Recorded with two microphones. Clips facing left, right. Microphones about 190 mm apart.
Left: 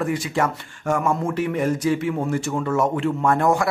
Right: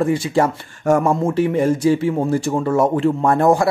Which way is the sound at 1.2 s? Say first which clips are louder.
Right 5 dB; 30° right (ahead or behind).